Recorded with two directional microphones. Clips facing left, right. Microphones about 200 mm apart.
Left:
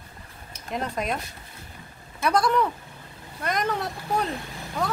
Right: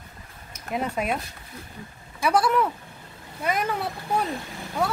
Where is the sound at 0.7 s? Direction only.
5° right (ahead or behind).